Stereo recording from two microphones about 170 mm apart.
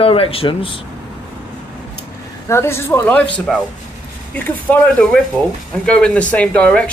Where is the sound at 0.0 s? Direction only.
35° left (ahead or behind).